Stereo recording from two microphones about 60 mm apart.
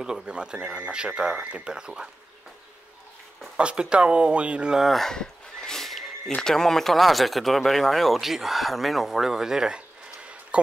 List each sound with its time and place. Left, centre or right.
0.0 s speech: centre
3.5 s speech: centre
4.7 s a sound: centre
6.3 s speech: centre